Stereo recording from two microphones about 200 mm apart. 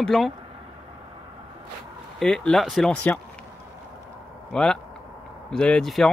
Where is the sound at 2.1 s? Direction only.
5° left (ahead or behind).